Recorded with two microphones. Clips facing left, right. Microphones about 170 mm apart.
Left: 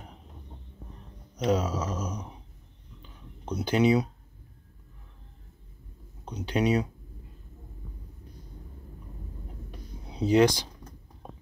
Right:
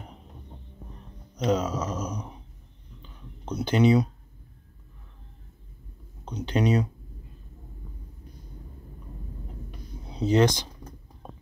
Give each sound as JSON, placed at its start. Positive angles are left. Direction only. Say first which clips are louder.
{"t": 1.4, "sound": "speech", "louder": "right 1 dB", "side_deg": 5}
{"t": 3.4, "sound": "speech", "louder": "right 2 dB", "side_deg": 5}
{"t": 6.2, "sound": "speech", "louder": "right 1 dB", "side_deg": 10}
{"t": 10.0, "sound": "speech", "louder": "even", "side_deg": 10}